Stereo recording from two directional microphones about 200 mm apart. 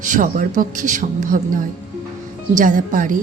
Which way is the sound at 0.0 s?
40° right (ahead or behind).